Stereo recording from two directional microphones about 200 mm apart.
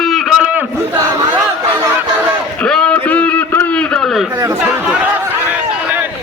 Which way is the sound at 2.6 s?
5° left (ahead or behind).